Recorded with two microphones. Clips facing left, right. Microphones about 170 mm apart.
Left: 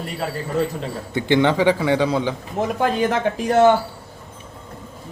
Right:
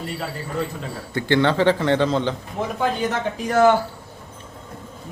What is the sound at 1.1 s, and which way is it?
Speech, 15° left (ahead or behind).